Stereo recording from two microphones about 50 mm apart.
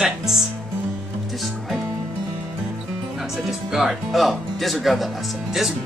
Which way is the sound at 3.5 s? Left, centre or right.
Centre.